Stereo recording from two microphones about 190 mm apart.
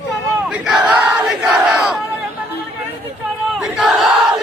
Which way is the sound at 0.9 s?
5° right (ahead or behind).